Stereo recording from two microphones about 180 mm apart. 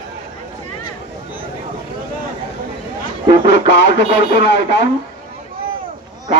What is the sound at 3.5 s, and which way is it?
Speech, 75° left (ahead or behind).